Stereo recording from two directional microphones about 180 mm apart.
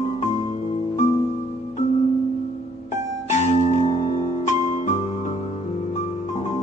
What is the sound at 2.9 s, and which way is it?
Music, 40° left (ahead or behind).